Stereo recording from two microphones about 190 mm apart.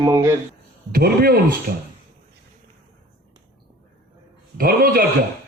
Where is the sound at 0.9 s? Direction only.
55° right (ahead or behind).